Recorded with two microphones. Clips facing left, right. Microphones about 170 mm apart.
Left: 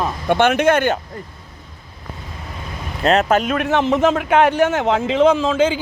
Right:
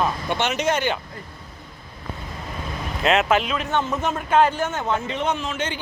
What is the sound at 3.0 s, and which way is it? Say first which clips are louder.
Speech: left 4 dB; 40° left (ahead or behind).